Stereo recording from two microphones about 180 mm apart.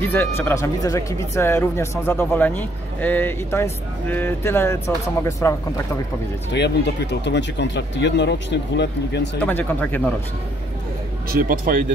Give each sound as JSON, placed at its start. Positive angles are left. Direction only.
{"t": 0.1, "sound": "speech", "side_deg": 10}
{"t": 6.5, "sound": "speech", "side_deg": 70}
{"t": 9.4, "sound": "speech", "side_deg": 10}
{"t": 11.2, "sound": "speech", "side_deg": -50}